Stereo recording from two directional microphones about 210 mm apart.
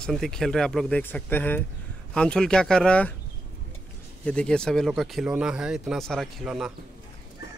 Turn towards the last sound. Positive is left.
turn(degrees=0)  # may be behind; listen again after turning